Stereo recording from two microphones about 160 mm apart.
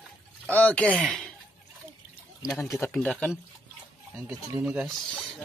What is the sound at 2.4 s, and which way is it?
Speech, 5° left (ahead or behind).